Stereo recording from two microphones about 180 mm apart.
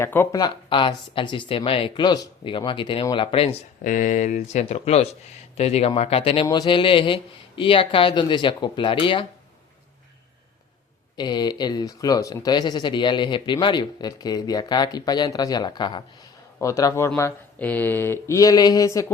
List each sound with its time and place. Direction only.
0.0 s speech: 15° left (ahead or behind); by 3.5 s 30° left (ahead or behind)
3.8 s speech: 45° left (ahead or behind); by 9.2 s 30° left (ahead or behind)
11.2 s speech: 25° left (ahead or behind)